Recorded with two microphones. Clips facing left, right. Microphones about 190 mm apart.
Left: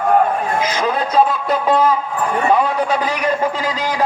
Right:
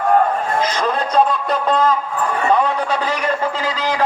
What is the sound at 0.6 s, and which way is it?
A man's voice, 10° left (ahead or behind).